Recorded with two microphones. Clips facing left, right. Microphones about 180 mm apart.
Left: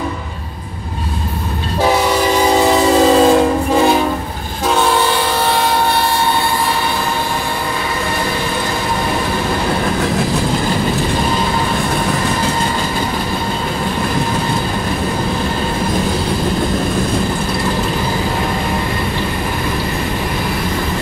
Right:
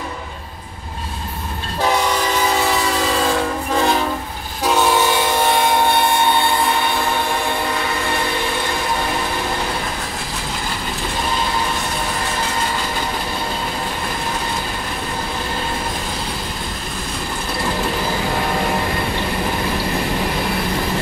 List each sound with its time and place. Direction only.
1.8 s train: 10° left (ahead or behind)
2.7 s train: 35° left (ahead or behind)
3.7 s train: 10° left (ahead or behind)
4.6 s train: 10° right (ahead or behind)